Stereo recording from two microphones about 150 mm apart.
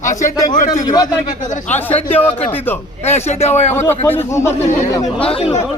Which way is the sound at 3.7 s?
15° left (ahead or behind).